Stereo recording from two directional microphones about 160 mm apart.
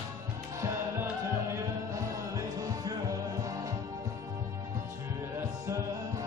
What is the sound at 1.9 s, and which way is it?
Music, 20° right (ahead or behind).